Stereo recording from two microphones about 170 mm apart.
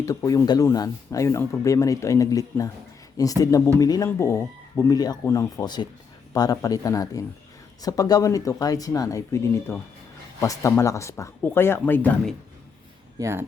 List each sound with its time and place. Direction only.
0.0 s speech: 20° left (ahead or behind)
13.1 s speech: 15° right (ahead or behind)